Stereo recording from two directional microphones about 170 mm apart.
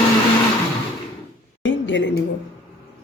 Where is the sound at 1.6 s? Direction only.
90° left.